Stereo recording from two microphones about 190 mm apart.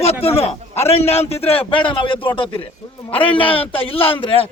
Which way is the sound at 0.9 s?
35° left (ahead or behind).